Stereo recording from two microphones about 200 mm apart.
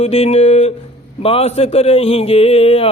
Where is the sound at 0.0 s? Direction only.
30° left (ahead or behind).